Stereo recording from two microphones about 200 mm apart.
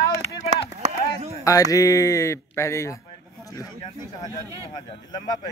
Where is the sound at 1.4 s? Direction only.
15° left (ahead or behind).